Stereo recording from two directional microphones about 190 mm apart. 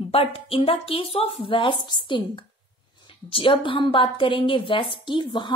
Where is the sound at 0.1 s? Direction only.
30° left (ahead or behind).